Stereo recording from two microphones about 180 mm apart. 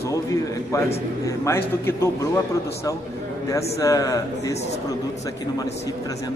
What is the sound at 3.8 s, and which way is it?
Speech, 20° left (ahead or behind).